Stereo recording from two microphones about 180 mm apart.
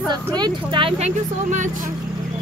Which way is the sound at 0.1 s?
25° right (ahead or behind).